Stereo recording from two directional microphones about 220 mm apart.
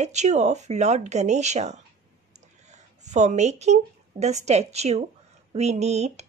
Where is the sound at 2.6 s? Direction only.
30° right (ahead or behind).